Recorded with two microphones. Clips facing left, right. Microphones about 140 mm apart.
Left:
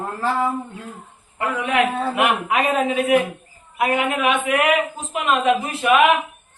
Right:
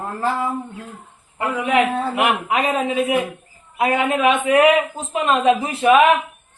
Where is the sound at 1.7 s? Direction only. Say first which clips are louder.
Right 1 dB; 30° right (ahead or behind).